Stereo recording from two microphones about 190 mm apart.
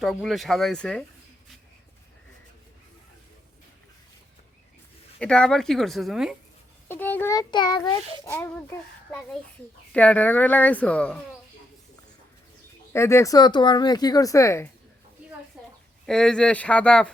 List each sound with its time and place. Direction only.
0.0 s speech: centre (ahead or behind)
5.2 s speech: 5° left (ahead or behind)
6.8 s a child's voice: 10° left (ahead or behind)
12.9 s speech: 15° left (ahead or behind)
15.6 s a sound: 5° right (ahead or behind)
16.0 s speech: 5° left (ahead or behind)